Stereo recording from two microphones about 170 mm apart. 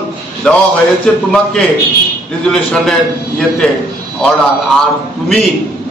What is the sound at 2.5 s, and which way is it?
Speech, centre (ahead or behind).